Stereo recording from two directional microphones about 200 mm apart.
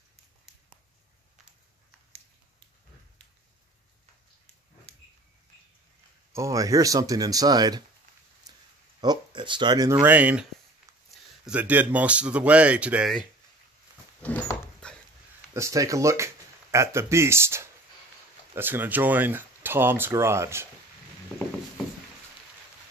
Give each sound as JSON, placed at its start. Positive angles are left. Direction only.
{"t": 6.3, "sound": "speech", "side_deg": -15}
{"t": 9.0, "sound": "speech", "side_deg": -20}
{"t": 11.4, "sound": "speech", "side_deg": -5}
{"t": 14.2, "sound": "dog", "side_deg": 5}
{"t": 15.5, "sound": "speech", "side_deg": -15}